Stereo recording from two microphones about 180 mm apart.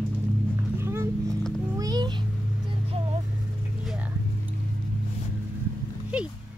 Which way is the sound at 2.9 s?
30° right (ahead or behind).